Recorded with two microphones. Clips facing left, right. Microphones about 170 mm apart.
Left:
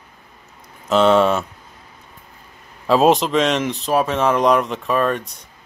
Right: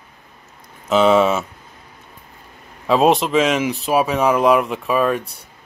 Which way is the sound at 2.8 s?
Centre (ahead or behind).